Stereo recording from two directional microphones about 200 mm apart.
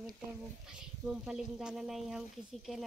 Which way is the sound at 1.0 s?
5° right (ahead or behind).